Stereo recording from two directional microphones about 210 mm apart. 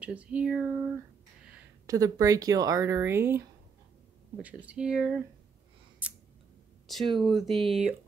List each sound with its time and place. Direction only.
0.0 s a sound: 5° right (ahead or behind)
1.9 s speech: 15° right (ahead or behind)
6.9 s speech: centre (ahead or behind)